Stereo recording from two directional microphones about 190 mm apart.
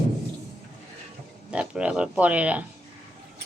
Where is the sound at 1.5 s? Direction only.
5° right (ahead or behind).